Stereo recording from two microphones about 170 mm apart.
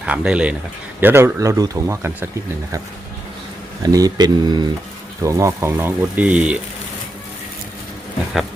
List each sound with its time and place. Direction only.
0.0 s speech: 5° right (ahead or behind)
3.8 s speech: 20° right (ahead or behind)